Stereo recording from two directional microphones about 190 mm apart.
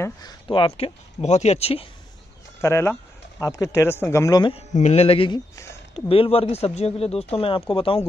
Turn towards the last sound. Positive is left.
turn(degrees=30)  # may be behind; listen again after turning